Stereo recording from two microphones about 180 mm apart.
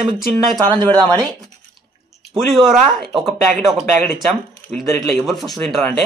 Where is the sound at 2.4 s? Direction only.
Centre (ahead or behind).